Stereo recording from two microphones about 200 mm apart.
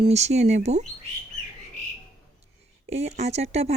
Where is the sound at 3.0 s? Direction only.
35° right (ahead or behind).